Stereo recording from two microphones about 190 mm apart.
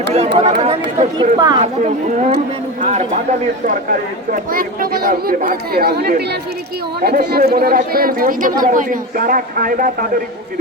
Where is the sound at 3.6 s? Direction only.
45° right (ahead or behind).